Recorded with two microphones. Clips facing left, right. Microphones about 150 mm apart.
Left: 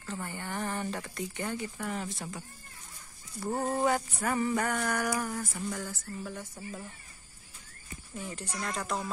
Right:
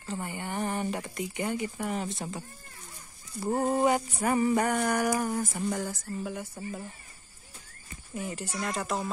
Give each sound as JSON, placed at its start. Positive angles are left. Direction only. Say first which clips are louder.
{"t": 0.0, "sound": "speech", "louder": "right 3 dB", "side_deg": -20}
{"t": 3.3, "sound": "a sound", "louder": "right 4 dB", "side_deg": -20}
{"t": 6.2, "sound": "speech", "louder": "right 4 dB", "side_deg": -15}
{"t": 6.5, "sound": "speech", "louder": "right 4 dB", "side_deg": -30}
{"t": 8.1, "sound": "a woman's voice", "louder": "right 4 dB", "side_deg": -5}